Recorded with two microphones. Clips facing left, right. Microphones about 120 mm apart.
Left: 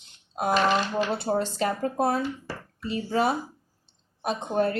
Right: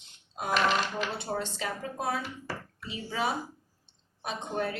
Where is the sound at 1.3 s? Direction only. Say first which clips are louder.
Left 8 dB; 40° left (ahead or behind).